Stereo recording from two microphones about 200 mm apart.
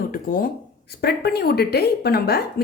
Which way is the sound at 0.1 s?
45° left (ahead or behind).